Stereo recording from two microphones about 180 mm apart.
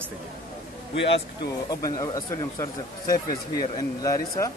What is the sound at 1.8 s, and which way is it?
Speech, 20° left (ahead or behind).